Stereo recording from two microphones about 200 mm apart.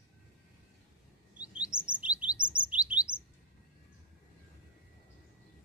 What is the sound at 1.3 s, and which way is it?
Chirp, 5° right (ahead or behind).